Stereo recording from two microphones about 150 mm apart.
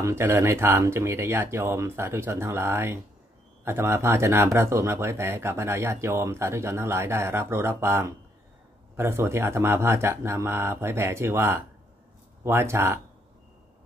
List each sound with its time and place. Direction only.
0.0 s speech: 15° right (ahead or behind)